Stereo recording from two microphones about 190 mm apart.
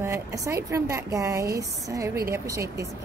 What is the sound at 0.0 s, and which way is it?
A woman's voice, 15° right (ahead or behind).